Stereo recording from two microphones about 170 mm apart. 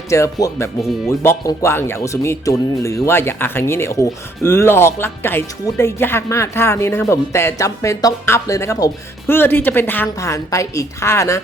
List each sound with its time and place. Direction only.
0.1 s speech: 20° left (ahead or behind)